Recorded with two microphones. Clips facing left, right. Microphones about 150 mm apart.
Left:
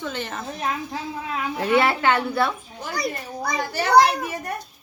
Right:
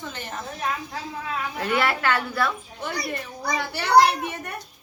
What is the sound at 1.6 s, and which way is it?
Speech, 25° left (ahead or behind).